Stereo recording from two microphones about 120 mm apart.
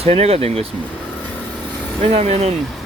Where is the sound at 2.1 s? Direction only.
60° right (ahead or behind).